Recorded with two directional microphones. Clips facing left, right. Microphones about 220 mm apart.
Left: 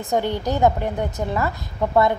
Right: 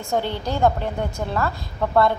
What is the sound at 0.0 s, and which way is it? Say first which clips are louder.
A woman's voice: left 2 dB; 15° left (ahead or behind).